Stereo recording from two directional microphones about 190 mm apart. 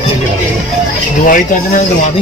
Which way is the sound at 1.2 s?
45° left (ahead or behind).